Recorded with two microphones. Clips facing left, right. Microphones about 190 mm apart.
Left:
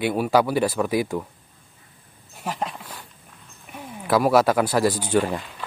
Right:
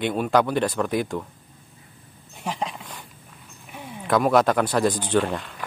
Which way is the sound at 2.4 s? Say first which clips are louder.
Even; centre (ahead or behind).